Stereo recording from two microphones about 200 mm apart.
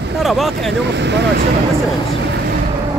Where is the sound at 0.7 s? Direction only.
60° right (ahead or behind).